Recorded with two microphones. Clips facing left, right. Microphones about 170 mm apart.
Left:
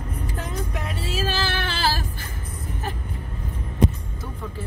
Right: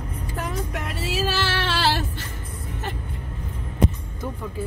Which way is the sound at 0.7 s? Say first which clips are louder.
Right 1 dB; 80° right.